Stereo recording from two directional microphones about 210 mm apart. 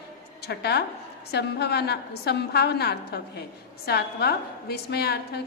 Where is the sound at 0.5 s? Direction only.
50° left (ahead or behind).